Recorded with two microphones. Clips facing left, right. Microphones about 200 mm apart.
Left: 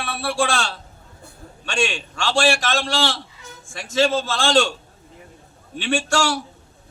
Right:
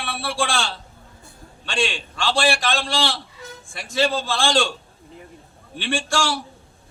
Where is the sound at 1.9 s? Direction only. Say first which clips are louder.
Even; centre (ahead or behind).